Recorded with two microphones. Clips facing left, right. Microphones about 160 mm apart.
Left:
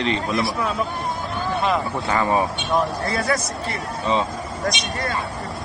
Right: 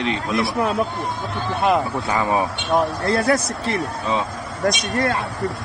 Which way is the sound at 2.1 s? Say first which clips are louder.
Left 1 dB; 10° right (ahead or behind).